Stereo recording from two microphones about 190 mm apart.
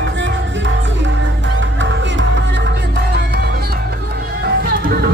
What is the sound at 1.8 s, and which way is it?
Music, 75° right (ahead or behind).